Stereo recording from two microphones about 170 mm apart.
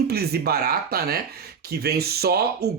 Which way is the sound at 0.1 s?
65° right (ahead or behind).